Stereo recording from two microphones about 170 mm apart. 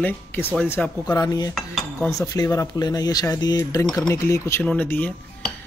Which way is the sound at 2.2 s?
20° left (ahead or behind).